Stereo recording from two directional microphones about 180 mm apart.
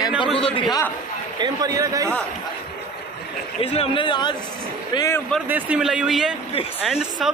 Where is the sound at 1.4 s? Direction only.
20° right (ahead or behind).